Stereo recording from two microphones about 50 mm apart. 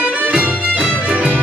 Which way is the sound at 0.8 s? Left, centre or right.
Right.